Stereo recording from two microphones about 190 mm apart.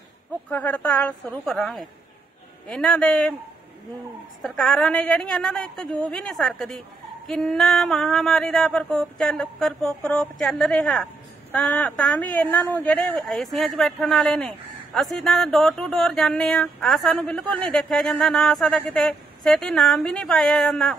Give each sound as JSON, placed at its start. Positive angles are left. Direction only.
{"t": 0.5, "sound": "a woman's voice", "side_deg": 5}
{"t": 4.4, "sound": "a man's voice", "side_deg": 0}